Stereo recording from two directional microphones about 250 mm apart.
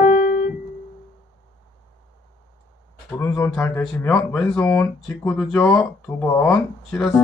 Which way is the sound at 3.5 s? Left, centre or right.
Centre.